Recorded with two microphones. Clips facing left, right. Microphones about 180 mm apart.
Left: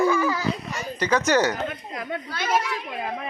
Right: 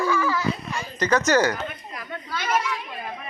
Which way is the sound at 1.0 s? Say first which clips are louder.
Right 1 dB; 10° left (ahead or behind).